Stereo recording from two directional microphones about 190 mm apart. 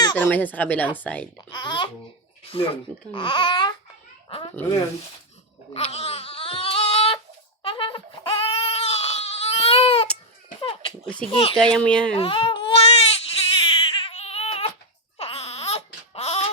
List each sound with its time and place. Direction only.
0.2 s speech: 10° left (ahead or behind)
1.4 s speech: 25° left (ahead or behind)
5.7 s a sound: 30° left (ahead or behind)
7.6 s crying: 30° left (ahead or behind)
10.6 s a sound: 30° left (ahead or behind)
11.3 s a child's voice: 30° left (ahead or behind)
11.5 s speech: 5° left (ahead or behind)
12.1 s baby cry: 30° left (ahead or behind)
13.8 s a sound: 25° left (ahead or behind)
15.2 s baby cry: 30° left (ahead or behind)